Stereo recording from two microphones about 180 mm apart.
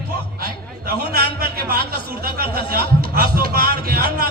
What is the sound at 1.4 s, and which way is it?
Speech, 55° right (ahead or behind).